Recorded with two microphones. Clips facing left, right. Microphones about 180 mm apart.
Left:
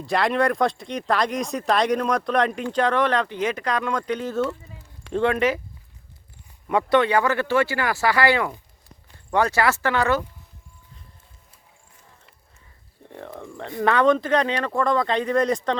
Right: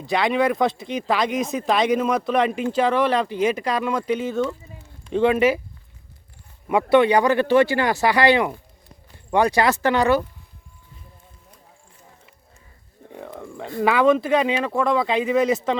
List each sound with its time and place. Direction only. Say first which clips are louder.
0.0 s speech: right 1 dB; centre (ahead or behind)
6.9 s speech: right 4 dB; 15° right (ahead or behind)
13.1 s speech: right 1 dB; 5° right (ahead or behind)